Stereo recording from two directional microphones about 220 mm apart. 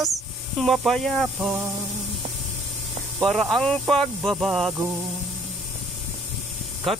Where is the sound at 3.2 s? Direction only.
Centre (ahead or behind).